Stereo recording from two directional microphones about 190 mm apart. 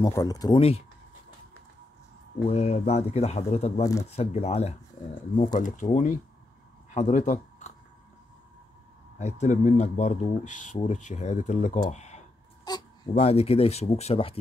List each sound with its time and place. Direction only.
0.0 s speech: 20° left (ahead or behind)
0.6 s speech: 30° left (ahead or behind)
2.4 s speech: 35° left (ahead or behind)
9.2 s speech: 40° left (ahead or behind)
11.9 s a sound: 35° left (ahead or behind)
12.6 s speech: 20° left (ahead or behind)